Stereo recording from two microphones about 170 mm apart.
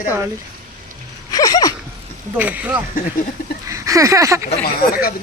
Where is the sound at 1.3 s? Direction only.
20° left (ahead or behind).